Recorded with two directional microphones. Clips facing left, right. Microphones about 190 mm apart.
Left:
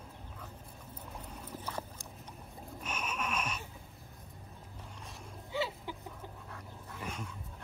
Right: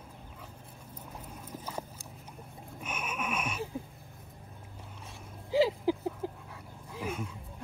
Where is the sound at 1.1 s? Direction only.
10° right (ahead or behind).